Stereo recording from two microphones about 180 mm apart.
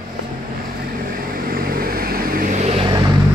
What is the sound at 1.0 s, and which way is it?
Vehicle, 55° right (ahead or behind).